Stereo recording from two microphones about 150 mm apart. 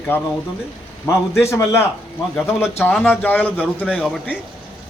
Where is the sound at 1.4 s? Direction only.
15° left (ahead or behind).